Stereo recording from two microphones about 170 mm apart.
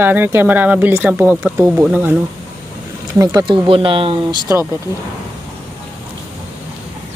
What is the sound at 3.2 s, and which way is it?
Speech, 20° right (ahead or behind).